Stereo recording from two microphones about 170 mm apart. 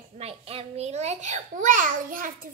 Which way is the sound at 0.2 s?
35° right (ahead or behind).